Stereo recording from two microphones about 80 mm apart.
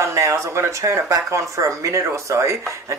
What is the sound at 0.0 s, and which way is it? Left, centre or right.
Speech, right.